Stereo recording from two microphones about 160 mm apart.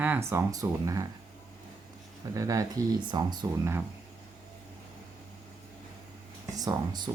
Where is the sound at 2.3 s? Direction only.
20° right (ahead or behind).